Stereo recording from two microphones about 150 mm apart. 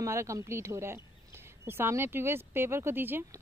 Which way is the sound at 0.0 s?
20° right (ahead or behind).